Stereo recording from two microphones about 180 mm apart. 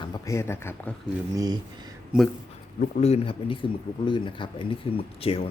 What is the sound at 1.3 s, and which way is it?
Speech, 20° right (ahead or behind).